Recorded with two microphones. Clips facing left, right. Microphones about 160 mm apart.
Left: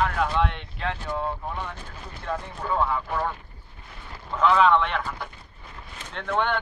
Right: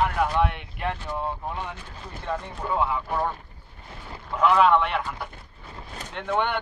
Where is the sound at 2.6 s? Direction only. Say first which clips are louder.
Even; 15° right (ahead or behind).